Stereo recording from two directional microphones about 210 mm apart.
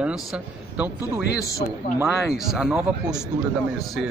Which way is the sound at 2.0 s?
Centre (ahead or behind).